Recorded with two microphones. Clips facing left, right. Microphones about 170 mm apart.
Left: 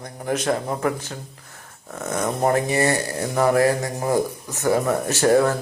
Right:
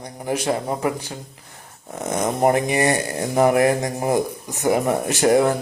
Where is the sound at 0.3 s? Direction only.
10° right (ahead or behind).